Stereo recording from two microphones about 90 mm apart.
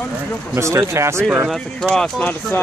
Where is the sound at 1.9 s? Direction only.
10° left (ahead or behind).